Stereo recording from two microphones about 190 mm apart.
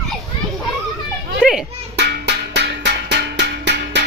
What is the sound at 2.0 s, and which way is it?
Music, 60° right (ahead or behind).